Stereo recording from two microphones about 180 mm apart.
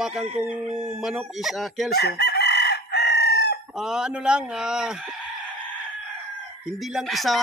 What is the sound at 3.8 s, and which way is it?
Speech, 5° right (ahead or behind).